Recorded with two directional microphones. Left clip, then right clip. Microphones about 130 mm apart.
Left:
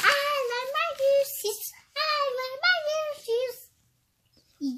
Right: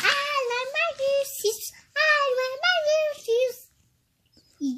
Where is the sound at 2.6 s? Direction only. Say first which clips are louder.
Right 2 dB; 35° right (ahead or behind).